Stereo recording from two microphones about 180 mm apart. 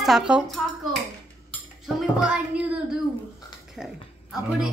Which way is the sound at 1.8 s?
5° right (ahead or behind).